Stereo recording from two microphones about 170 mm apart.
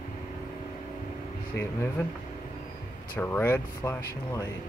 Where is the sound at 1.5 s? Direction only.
15° left (ahead or behind).